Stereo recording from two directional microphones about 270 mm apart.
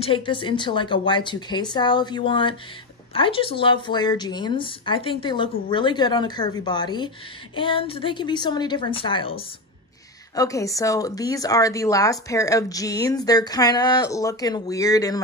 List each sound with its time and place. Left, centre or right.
0.0 s speech: centre